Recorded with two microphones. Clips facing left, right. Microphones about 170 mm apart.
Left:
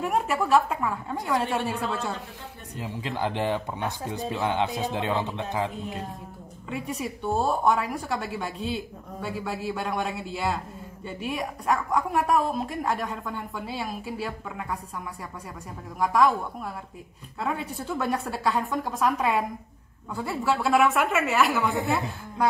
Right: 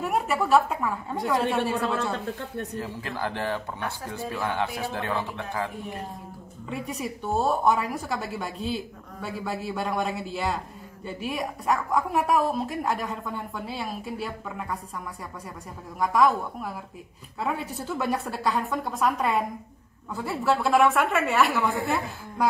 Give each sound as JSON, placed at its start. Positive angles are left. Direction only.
{"t": 0.0, "sound": "a woman's voice", "side_deg": 0}
{"t": 2.7, "sound": "speech", "side_deg": 15}
{"t": 6.7, "sound": "a woman's voice", "side_deg": 0}
{"t": 16.0, "sound": "a woman's voice", "side_deg": 0}